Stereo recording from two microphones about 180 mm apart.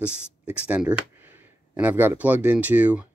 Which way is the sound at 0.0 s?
5° right (ahead or behind).